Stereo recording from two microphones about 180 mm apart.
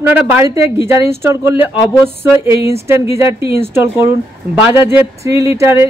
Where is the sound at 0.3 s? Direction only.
15° right (ahead or behind).